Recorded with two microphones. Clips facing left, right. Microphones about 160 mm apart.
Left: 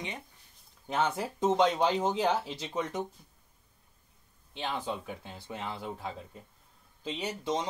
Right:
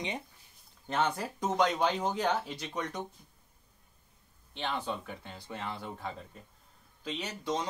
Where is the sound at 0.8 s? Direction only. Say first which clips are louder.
Left 1 dB; 5° left (ahead or behind).